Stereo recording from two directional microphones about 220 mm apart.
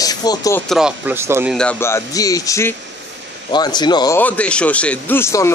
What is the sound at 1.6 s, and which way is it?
Speech, 10° left (ahead or behind).